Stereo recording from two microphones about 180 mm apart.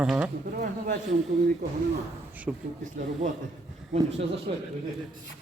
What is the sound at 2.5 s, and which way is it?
Speech, 10° right (ahead or behind).